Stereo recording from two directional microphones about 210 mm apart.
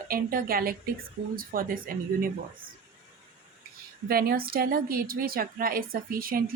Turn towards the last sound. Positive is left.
turn(degrees=-45)  # may be behind; listen again after turning